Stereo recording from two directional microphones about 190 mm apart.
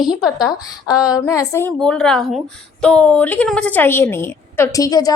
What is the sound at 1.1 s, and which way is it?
Speech, 20° left (ahead or behind).